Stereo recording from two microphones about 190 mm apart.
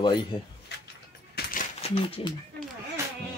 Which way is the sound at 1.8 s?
25° left (ahead or behind).